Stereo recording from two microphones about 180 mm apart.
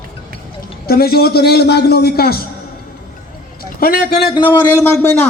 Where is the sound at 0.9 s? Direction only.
60° left (ahead or behind).